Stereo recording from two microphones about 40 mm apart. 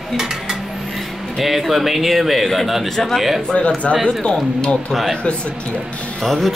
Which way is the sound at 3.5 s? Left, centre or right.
Left.